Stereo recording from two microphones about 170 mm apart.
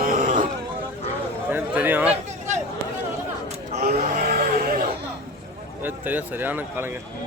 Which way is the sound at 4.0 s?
50° right (ahead or behind).